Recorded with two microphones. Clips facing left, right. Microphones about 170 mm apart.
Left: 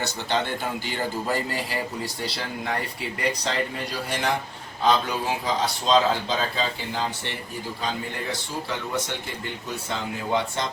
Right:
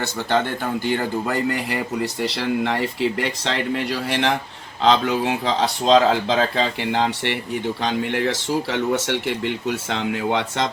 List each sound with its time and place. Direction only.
2.6 s speech: 90° right; by 4.3 s 75° right (ahead or behind)
4.8 s speech: 90° right; by 7.3 s 70° right (ahead or behind)
7.9 s speech: 90° right
9.6 s speech: 75° right (ahead or behind)